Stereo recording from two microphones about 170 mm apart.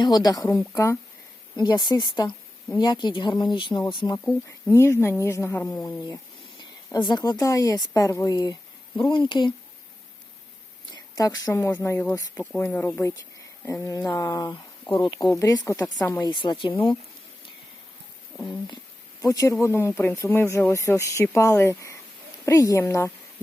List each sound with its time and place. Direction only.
0.0 s speech: 25° left (ahead or behind)
6.6 s speech: 25° left (ahead or behind)
11.1 s speech: 20° left (ahead or behind)
16.2 s speech: 25° left (ahead or behind)
19.2 s speech: 20° left (ahead or behind)